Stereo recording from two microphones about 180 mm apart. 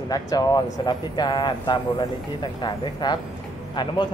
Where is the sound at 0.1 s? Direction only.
20° left (ahead or behind).